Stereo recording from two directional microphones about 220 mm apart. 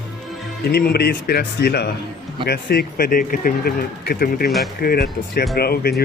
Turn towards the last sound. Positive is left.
turn(degrees=45)  # may be behind; listen again after turning